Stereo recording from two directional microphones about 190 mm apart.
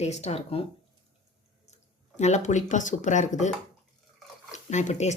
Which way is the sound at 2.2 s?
35° left (ahead or behind).